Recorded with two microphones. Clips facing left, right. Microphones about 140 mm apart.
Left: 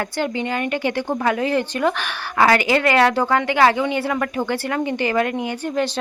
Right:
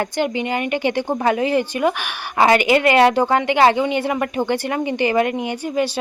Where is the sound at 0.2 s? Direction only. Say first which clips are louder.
Right 1 dB; 15° right (ahead or behind).